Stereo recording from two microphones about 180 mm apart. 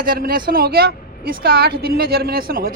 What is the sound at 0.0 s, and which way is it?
A woman's voice, 55° right (ahead or behind).